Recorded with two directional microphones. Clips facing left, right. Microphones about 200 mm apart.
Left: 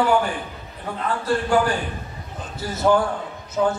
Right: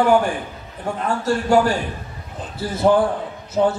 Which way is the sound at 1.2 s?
40° right (ahead or behind).